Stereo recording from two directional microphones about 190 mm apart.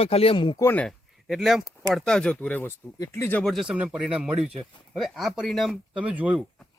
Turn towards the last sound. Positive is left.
turn(degrees=-5)  # may be behind; listen again after turning